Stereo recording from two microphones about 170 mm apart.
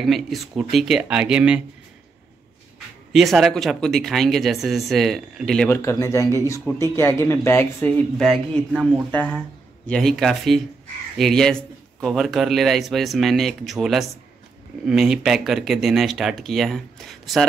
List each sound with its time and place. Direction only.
0.0 s speech: centre (ahead or behind)
3.1 s speech: centre (ahead or behind)
5.7 s speech: 15° left (ahead or behind)